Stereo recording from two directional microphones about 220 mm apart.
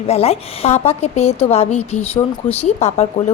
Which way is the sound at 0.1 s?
30° left (ahead or behind).